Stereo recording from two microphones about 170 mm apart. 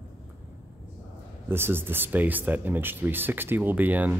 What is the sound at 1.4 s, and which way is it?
A man's voice, 15° right (ahead or behind).